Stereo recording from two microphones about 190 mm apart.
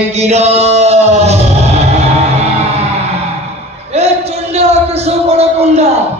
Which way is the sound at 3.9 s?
35° right (ahead or behind).